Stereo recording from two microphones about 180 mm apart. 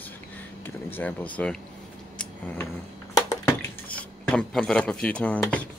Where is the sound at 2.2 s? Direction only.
10° left (ahead or behind).